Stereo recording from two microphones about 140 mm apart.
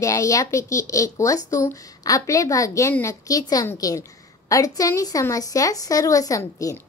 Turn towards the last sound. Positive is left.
turn(degrees=25)  # may be behind; listen again after turning